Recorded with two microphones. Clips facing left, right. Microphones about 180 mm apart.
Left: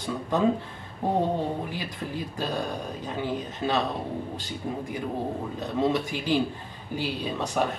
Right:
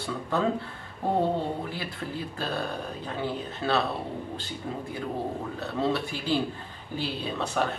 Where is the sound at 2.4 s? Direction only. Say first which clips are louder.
Left 2 dB; 15° left (ahead or behind).